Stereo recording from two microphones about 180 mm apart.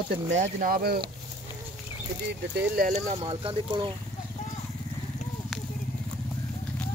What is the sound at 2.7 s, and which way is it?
Speech, 45° right (ahead or behind).